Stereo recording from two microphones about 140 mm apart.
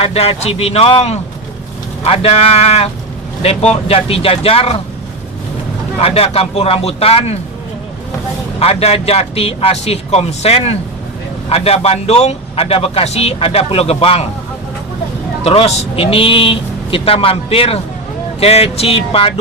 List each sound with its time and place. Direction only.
0.0 s a man's voice: 45° left (ahead or behind)
6.0 s a man's voice: 45° left (ahead or behind)
8.5 s a man's voice: 45° left (ahead or behind)
15.4 s a man's voice: 45° left (ahead or behind)